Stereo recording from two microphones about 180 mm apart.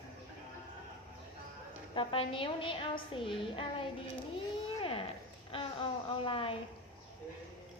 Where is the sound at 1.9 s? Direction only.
30° left (ahead or behind).